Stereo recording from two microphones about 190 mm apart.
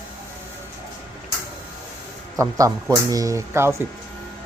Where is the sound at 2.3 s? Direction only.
15° right (ahead or behind).